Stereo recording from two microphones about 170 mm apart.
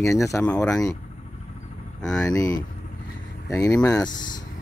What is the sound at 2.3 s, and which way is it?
Speech, 20° left (ahead or behind).